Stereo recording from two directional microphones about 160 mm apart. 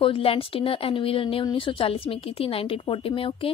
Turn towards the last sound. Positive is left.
turn(degrees=35)  # may be behind; listen again after turning